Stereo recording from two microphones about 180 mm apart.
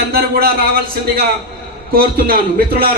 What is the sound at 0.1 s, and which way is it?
Speech, 60° right (ahead or behind).